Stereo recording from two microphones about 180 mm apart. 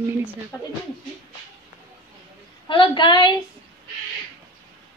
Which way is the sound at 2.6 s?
25° left (ahead or behind).